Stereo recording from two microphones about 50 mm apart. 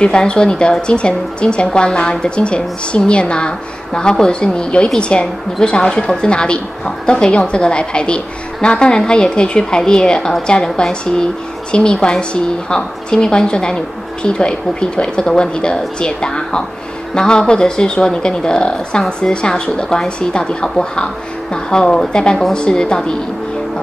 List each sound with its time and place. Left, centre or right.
0.0 s a woman's voice: centre